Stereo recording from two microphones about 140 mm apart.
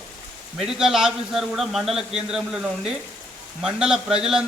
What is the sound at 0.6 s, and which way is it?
Speech, 5° right (ahead or behind).